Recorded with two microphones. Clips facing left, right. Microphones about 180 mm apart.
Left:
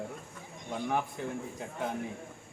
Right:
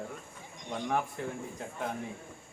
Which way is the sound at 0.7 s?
5° left (ahead or behind).